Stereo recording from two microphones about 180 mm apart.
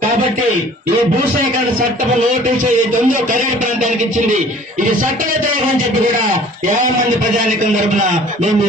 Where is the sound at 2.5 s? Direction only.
50° right (ahead or behind).